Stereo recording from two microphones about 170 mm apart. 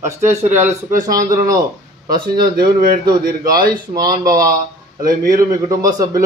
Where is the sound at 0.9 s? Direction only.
55° right (ahead or behind).